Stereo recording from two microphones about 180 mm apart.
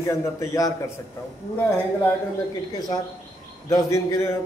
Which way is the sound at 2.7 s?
25° left (ahead or behind).